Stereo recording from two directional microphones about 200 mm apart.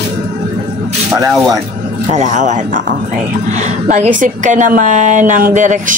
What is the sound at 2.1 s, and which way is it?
Speech, 40° right (ahead or behind).